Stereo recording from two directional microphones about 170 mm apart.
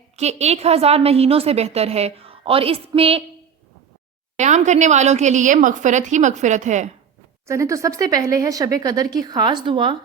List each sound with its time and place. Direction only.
0.2 s a woman's voice: 40° right (ahead or behind)
4.4 s a woman's voice: 45° right (ahead or behind)
7.4 s speech: 15° right (ahead or behind)